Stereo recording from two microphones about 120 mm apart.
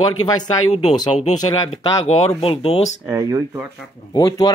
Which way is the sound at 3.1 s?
30° right (ahead or behind).